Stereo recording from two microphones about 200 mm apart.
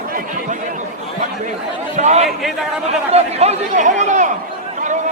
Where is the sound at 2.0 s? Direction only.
35° right (ahead or behind).